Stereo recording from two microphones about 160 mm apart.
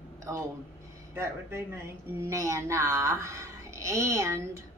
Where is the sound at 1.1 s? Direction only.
15° right (ahead or behind).